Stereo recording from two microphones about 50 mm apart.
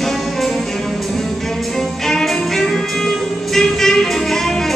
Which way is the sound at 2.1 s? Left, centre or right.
Centre.